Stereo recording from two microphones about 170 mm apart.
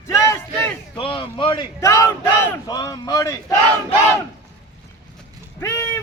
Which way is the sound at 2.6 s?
20° left (ahead or behind).